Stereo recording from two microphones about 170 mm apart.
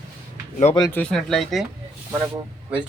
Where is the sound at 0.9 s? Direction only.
5° left (ahead or behind).